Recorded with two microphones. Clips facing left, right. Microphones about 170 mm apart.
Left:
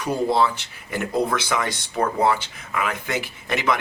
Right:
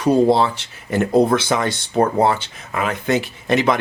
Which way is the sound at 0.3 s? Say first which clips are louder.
Right 2 dB; 30° right (ahead or behind).